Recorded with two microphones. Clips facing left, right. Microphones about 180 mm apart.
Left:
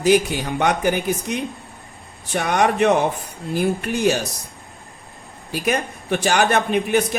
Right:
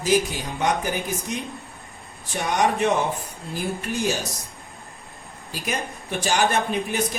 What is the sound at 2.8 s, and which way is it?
A man's voice, 65° left (ahead or behind).